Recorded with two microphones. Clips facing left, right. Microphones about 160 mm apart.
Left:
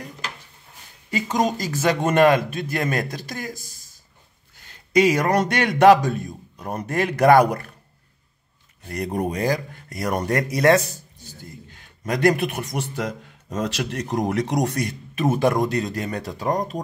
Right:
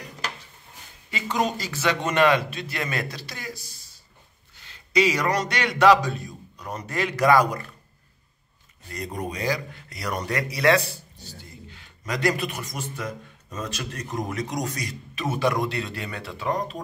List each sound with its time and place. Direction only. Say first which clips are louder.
1.1 s a man's voice: left 4 dB; 40° left (ahead or behind); by 7.7 s 60° left (ahead or behind)
8.8 s a man's voice: left 7 dB; 55° left (ahead or behind)